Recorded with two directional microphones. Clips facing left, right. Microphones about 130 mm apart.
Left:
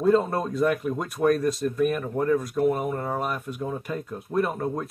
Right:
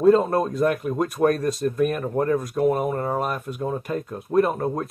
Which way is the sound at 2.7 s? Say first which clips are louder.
Right 3 dB; 40° right (ahead or behind).